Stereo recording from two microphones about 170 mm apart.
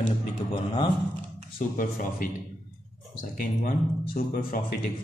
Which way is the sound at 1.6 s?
45° left (ahead or behind).